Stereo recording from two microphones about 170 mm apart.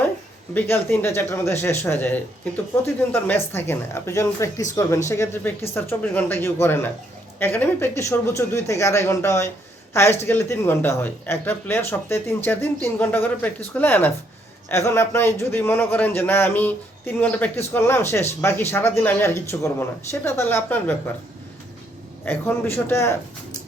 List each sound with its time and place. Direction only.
0.5 s speech: 15° left (ahead or behind)
22.2 s speech: 10° left (ahead or behind)